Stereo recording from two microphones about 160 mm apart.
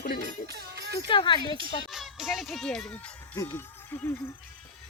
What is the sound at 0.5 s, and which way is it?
Speech, 90° right.